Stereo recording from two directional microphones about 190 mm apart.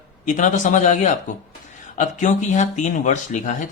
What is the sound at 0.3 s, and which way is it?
A man's voice, 40° left (ahead or behind).